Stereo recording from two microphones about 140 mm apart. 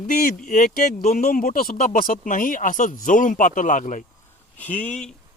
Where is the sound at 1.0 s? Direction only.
75° left (ahead or behind).